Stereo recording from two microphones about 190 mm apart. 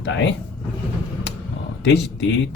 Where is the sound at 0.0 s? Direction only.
75° left (ahead or behind).